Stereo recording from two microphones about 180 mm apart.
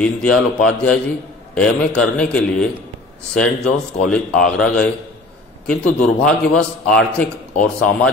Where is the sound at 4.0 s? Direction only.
5° left (ahead or behind).